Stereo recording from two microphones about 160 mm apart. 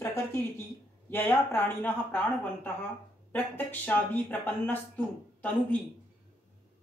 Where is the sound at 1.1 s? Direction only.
15° left (ahead or behind).